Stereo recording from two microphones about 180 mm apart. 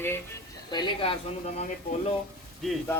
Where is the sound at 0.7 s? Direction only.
25° left (ahead or behind).